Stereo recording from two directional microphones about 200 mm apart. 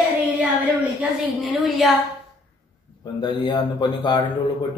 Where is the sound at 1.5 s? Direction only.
Centre (ahead or behind).